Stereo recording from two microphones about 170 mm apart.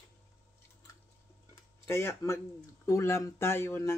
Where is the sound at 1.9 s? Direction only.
15° left (ahead or behind).